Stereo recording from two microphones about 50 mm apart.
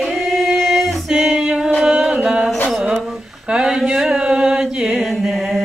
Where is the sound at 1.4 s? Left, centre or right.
Centre.